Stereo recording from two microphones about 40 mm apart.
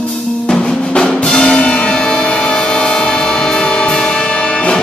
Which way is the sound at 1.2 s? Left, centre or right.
Left.